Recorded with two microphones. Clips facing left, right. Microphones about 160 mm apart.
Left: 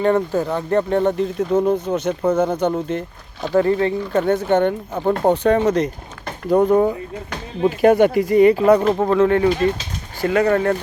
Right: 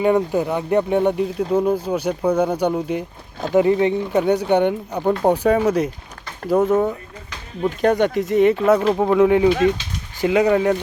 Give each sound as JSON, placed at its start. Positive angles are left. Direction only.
{"t": 0.0, "sound": "speech", "side_deg": -15}
{"t": 1.4, "sound": "speech", "side_deg": 0}